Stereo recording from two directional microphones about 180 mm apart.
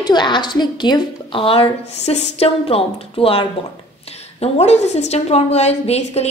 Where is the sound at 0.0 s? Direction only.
25° left (ahead or behind).